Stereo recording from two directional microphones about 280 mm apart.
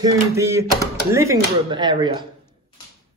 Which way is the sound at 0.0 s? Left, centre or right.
Centre.